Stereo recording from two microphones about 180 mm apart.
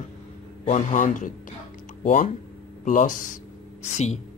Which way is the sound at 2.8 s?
45° left (ahead or behind).